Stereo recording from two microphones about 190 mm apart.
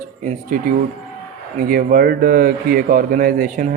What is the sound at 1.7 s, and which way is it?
A man's voice, 50° right (ahead or behind).